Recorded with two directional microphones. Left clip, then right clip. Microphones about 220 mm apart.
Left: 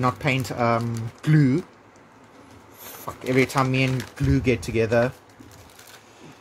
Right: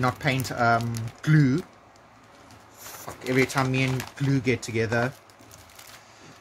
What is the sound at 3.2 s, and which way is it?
Speech, 20° left (ahead or behind).